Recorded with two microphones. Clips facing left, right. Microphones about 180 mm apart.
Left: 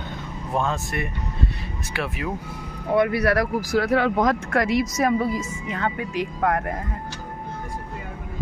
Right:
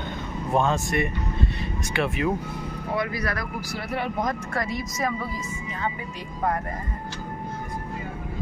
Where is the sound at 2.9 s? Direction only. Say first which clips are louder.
Left 9 dB; 65° left (ahead or behind).